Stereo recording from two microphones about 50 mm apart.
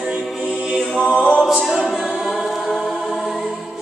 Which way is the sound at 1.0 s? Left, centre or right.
Centre.